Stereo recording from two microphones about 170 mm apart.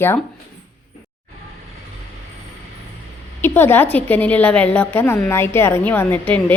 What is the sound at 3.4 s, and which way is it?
A woman's voice, 10° left (ahead or behind).